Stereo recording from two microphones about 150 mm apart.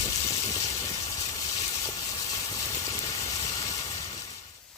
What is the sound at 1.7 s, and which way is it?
Vehicle, 25° left (ahead or behind).